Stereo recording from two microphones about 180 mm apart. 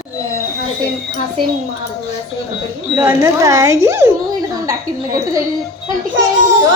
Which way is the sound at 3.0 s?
15° right (ahead or behind).